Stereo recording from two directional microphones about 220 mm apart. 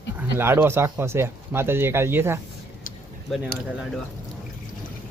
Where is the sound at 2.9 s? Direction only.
40° left (ahead or behind).